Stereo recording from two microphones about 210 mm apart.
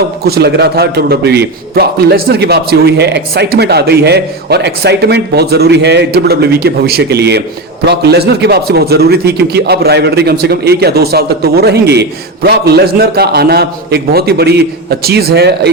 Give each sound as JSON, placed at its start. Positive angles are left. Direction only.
{"t": 0.3, "sound": "a man's voice", "side_deg": -50}